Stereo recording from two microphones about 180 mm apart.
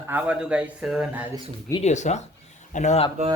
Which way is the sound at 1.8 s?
40° left (ahead or behind).